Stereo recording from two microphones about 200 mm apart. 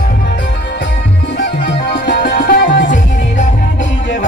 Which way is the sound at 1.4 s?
55° left (ahead or behind).